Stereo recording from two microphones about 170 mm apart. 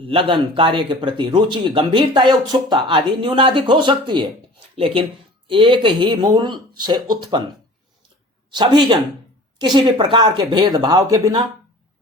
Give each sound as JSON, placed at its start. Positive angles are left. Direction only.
{"t": 0.1, "sound": "speech", "side_deg": -30}
{"t": 5.5, "sound": "speech", "side_deg": -30}
{"t": 8.5, "sound": "speech", "side_deg": -25}